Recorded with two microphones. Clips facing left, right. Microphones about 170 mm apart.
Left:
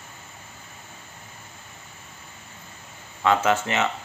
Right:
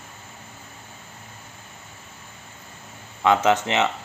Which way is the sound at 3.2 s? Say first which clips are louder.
Right 2 dB; 15° right (ahead or behind).